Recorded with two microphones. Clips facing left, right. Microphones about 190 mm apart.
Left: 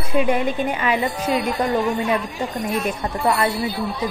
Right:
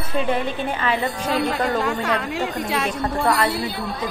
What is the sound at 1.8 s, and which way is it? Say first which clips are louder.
A woman's voice: left 2 dB; 85° right.